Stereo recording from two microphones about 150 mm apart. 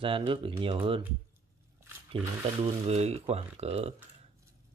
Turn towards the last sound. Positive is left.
turn(degrees=-40)  # may be behind; listen again after turning